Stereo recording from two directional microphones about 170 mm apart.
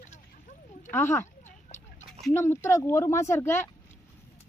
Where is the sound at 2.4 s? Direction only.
15° left (ahead or behind).